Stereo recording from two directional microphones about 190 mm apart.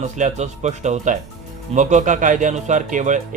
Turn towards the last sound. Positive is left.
turn(degrees=-40)  # may be behind; listen again after turning